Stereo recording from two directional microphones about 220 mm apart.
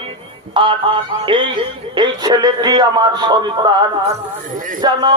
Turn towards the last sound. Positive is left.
turn(degrees=-35)  # may be behind; listen again after turning